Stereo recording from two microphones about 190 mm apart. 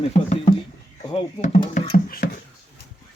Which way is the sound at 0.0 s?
35° left (ahead or behind).